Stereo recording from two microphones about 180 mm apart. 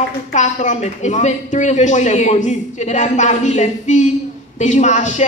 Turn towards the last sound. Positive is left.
turn(degrees=40)  # may be behind; listen again after turning